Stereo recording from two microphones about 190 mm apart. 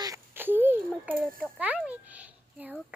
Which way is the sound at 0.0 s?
15° right (ahead or behind).